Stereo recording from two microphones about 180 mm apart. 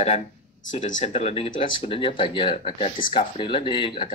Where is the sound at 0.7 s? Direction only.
45° left (ahead or behind).